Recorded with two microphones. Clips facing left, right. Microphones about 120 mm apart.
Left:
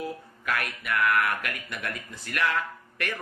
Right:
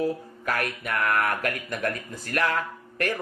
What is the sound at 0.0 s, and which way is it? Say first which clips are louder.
Speech: right 7 dB; 35° right (ahead or behind).